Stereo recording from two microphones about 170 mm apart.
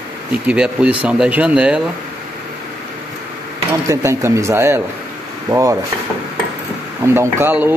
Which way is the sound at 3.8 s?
15° right (ahead or behind).